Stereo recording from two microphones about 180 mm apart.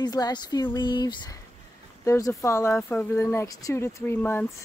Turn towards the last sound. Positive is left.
turn(degrees=10)  # may be behind; listen again after turning